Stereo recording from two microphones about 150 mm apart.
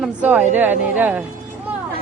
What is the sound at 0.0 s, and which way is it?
A man's voice, 10° right (ahead or behind).